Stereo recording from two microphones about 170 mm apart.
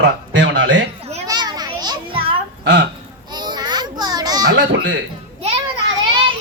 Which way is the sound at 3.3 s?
25° right (ahead or behind).